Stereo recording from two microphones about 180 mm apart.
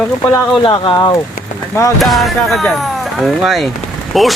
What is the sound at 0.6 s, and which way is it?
Speech, 25° left (ahead or behind).